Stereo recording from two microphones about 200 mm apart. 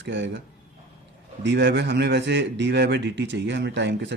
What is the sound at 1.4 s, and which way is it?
A man's voice, 60° right (ahead or behind).